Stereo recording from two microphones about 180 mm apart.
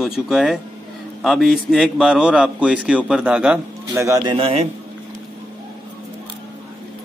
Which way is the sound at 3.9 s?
15° right (ahead or behind).